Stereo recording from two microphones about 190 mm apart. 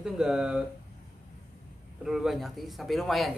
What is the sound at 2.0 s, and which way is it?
Speech, centre (ahead or behind).